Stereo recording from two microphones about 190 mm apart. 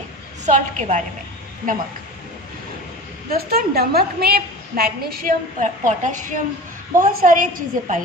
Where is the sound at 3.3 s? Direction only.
55° right (ahead or behind).